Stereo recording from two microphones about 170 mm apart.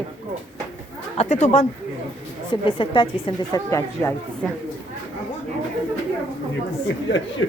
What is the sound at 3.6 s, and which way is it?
Speech, 15° left (ahead or behind).